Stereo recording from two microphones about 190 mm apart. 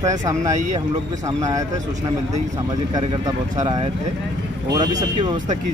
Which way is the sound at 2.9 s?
20° right (ahead or behind).